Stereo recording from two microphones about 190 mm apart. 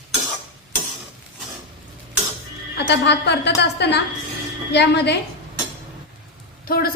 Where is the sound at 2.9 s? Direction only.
65° left (ahead or behind).